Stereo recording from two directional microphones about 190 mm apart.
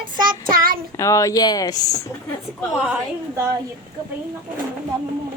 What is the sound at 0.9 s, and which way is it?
Speech, 15° left (ahead or behind).